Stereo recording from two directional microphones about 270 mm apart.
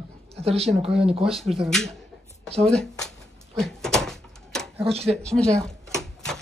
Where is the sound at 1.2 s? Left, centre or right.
Centre.